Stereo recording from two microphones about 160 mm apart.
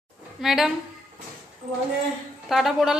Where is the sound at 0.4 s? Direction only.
Centre (ahead or behind).